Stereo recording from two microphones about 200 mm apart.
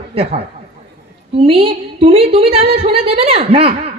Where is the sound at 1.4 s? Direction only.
30° right (ahead or behind).